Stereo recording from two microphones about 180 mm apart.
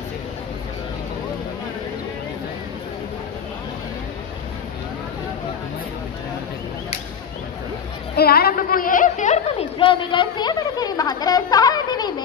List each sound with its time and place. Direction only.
8.2 s a woman's voice: 60° left (ahead or behind); by 12.1 s 20° left (ahead or behind)